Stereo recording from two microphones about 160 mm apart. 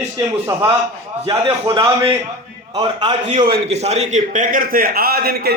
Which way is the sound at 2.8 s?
35° right (ahead or behind).